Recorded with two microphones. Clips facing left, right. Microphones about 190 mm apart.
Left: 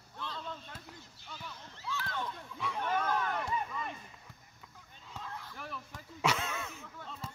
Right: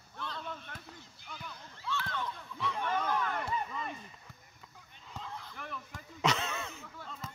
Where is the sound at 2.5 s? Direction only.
5° left (ahead or behind).